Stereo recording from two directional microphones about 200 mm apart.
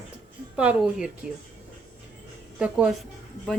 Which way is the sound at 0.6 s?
5° right (ahead or behind).